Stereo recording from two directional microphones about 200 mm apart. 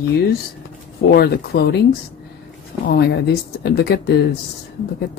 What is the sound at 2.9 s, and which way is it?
Speech, 55° left (ahead or behind).